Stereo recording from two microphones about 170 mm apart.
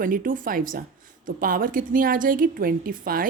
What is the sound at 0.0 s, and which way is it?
A woman's voice, 55° right (ahead or behind).